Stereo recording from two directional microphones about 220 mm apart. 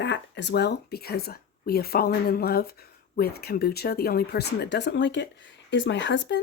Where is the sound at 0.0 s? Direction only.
55° left (ahead or behind).